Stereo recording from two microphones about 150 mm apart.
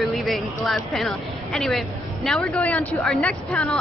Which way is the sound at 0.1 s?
Centre (ahead or behind).